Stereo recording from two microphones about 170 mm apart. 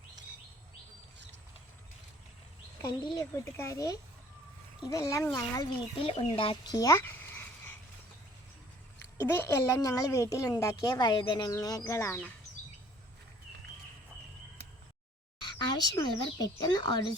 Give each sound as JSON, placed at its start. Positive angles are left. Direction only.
{"t": 2.8, "sound": "a woman's voice", "side_deg": 20}
{"t": 6.1, "sound": "speech", "side_deg": 30}
{"t": 9.2, "sound": "a woman's voice", "side_deg": 15}
{"t": 15.4, "sound": "speech", "side_deg": 25}